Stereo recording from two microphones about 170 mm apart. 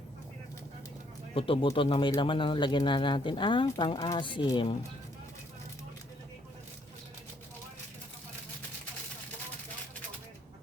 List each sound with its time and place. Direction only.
1.3 s speech: 30° left (ahead or behind)